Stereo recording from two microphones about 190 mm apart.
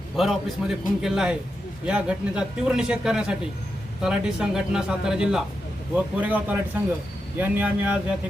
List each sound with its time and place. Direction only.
0.2 s speech: centre (ahead or behind)